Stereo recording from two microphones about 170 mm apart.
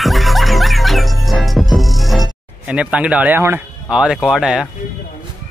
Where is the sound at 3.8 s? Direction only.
5° right (ahead or behind).